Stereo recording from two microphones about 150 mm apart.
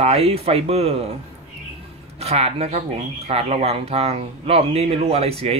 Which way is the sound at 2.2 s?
45° right (ahead or behind).